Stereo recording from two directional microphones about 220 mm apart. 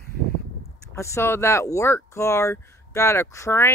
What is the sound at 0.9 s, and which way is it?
Speech, 10° left (ahead or behind).